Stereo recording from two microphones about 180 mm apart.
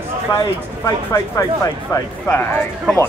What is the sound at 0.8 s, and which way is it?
Speech, 15° left (ahead or behind).